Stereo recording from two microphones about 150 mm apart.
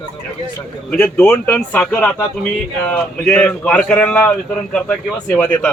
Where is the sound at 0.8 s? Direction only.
10° left (ahead or behind).